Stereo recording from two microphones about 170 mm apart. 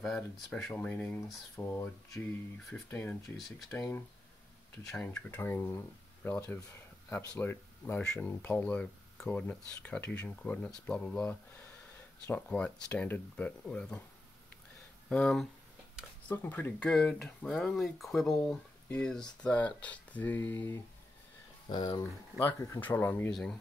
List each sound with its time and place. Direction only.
0.0 s speech: 5° left (ahead or behind)
4.9 s speech: 10° left (ahead or behind)
15.0 s speech: 5° left (ahead or behind)
21.6 s speech: 25° left (ahead or behind)
22.4 s speech: 15° left (ahead or behind)